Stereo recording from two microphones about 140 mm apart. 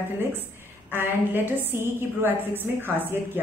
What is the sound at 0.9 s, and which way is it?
A woman's voice, 15° right (ahead or behind).